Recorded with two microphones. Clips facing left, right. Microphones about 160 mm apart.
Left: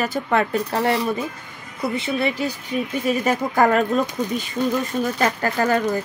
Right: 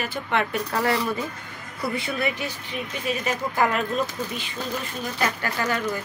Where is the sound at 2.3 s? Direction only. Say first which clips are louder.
Left 7 dB; 45° left (ahead or behind).